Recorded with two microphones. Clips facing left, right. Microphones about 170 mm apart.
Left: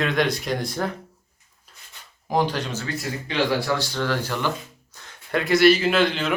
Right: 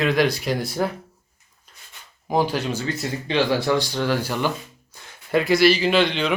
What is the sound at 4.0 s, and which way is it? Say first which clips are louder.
Speech: right 2 dB; 15° right (ahead or behind).